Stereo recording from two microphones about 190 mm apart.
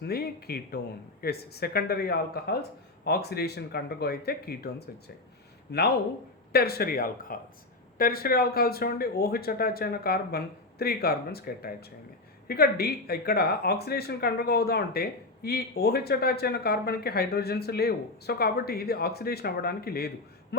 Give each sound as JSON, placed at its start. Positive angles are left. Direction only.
{"t": 0.0, "sound": "speech", "side_deg": 55}
{"t": 6.5, "sound": "speech", "side_deg": 55}